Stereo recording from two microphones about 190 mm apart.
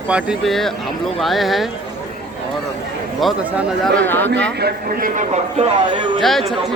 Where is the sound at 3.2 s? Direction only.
5° right (ahead or behind).